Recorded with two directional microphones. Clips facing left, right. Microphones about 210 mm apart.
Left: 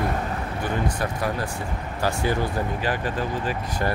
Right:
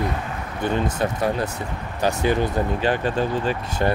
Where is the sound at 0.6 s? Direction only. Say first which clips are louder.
Right 5 dB; 25° right (ahead or behind).